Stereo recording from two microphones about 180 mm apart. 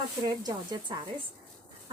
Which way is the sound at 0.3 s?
20° right (ahead or behind).